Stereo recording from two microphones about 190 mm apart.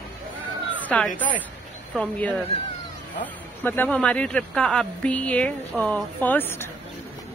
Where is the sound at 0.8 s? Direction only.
5° left (ahead or behind).